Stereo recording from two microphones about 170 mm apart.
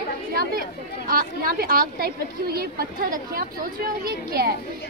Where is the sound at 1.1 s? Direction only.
60° right (ahead or behind).